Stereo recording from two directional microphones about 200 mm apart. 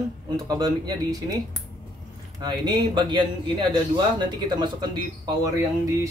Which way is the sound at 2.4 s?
20° right (ahead or behind).